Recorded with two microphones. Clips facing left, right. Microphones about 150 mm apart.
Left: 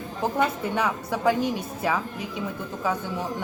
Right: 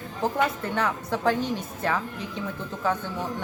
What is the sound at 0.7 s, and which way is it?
Speech, 15° left (ahead or behind).